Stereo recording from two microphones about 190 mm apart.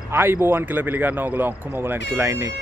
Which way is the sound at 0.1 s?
10° right (ahead or behind).